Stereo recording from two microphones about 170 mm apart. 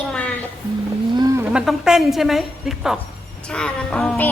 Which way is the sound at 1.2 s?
20° right (ahead or behind).